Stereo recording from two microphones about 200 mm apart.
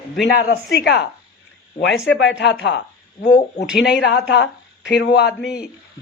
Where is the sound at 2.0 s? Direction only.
60° left (ahead or behind).